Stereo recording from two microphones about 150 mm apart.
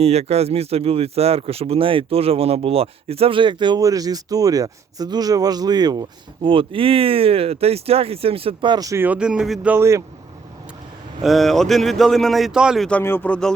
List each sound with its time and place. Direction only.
0.0 s speech: 45° right (ahead or behind); by 9.0 s 20° right (ahead or behind)
9.0 s speech: 5° right (ahead or behind)
9.7 s speech: 20° right (ahead or behind)
11.2 s speech: centre (ahead or behind)
13.0 s speech: 15° left (ahead or behind)